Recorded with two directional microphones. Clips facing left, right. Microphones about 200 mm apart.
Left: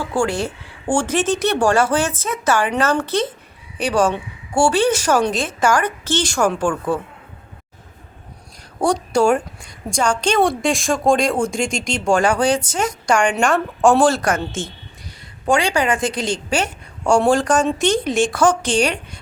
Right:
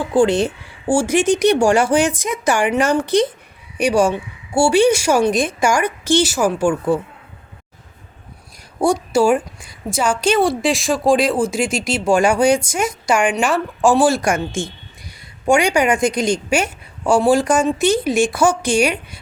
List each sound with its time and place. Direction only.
0.0 s speech: 20° right (ahead or behind)
0.9 s a woman's voice: 10° right (ahead or behind)
8.8 s a woman's voice: 5° right (ahead or behind)